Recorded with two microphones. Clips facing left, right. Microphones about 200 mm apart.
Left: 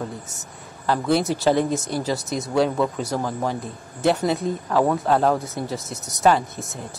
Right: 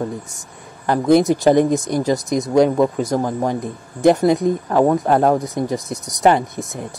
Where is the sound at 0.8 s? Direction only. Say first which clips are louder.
Right 7 dB; 15° right (ahead or behind).